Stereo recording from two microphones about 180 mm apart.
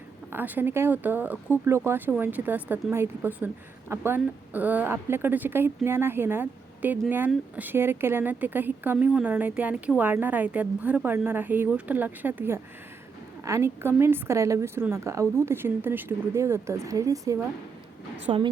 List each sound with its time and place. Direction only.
0.3 s speech: 10° right (ahead or behind)
18.3 s a woman's voice: 30° right (ahead or behind)